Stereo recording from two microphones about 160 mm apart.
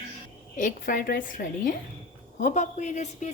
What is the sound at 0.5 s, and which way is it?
A woman's voice, 55° left (ahead or behind).